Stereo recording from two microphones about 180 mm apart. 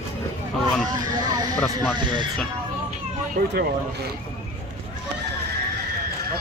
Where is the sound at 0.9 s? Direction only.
20° right (ahead or behind).